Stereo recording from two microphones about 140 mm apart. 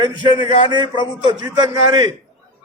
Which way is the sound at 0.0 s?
30° right (ahead or behind).